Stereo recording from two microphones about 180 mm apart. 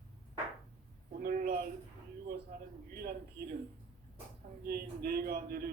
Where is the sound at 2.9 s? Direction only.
60° right (ahead or behind).